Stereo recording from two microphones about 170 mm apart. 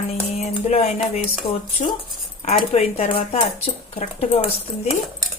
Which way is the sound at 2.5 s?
40° left (ahead or behind).